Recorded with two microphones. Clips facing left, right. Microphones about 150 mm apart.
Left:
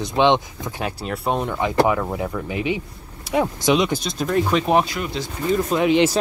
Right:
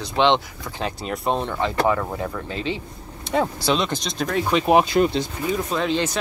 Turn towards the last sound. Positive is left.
turn(degrees=15)  # may be behind; listen again after turning